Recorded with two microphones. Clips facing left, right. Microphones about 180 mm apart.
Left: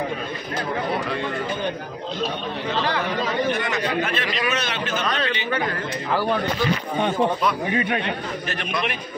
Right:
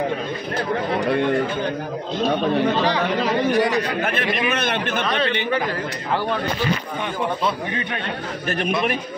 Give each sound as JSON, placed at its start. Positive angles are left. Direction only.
{"t": 3.5, "sound": "speech", "side_deg": -35}
{"t": 4.0, "sound": "a man's voice", "side_deg": -55}